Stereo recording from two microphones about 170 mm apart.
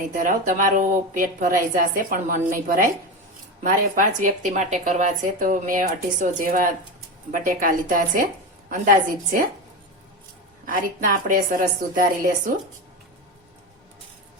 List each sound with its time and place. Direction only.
0.1 s speech: 50° right (ahead or behind)
10.7 s speech: 55° right (ahead or behind)